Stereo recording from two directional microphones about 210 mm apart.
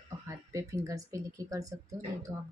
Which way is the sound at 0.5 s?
15° right (ahead or behind).